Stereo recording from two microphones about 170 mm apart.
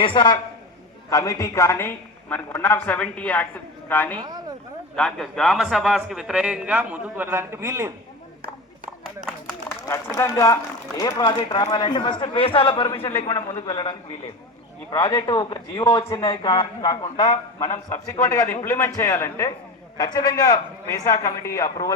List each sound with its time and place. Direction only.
0.0 s a woman's voice: 30° left (ahead or behind); by 4.2 s 10° left (ahead or behind)
4.2 s a sound: 20° right (ahead or behind)
4.9 s a man's voice: 5° left (ahead or behind); by 7.9 s 15° right (ahead or behind)
10.2 s speech: 20° left (ahead or behind)
16.5 s a woman's voice: 30° left (ahead or behind)